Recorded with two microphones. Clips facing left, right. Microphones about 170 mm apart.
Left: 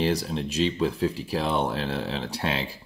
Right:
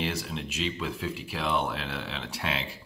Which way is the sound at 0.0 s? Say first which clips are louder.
Left 7 dB; 35° left (ahead or behind).